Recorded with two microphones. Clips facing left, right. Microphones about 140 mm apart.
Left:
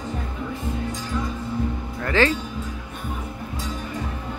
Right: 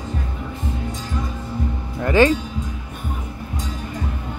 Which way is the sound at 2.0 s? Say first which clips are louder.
Right 5 dB; 15° right (ahead or behind).